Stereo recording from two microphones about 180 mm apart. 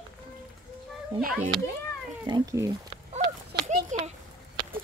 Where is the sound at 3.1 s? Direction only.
40° right (ahead or behind).